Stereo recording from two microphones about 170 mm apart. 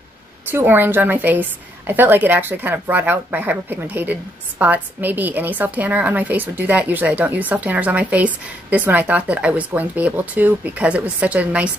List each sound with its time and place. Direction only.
0.5 s a woman's voice: 10° right (ahead or behind)